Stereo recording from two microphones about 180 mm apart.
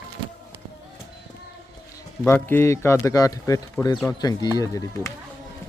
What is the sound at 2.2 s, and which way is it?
Speech, 10° left (ahead or behind).